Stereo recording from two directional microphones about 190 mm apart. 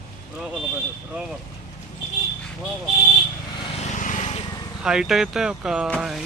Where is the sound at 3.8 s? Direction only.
40° left (ahead or behind).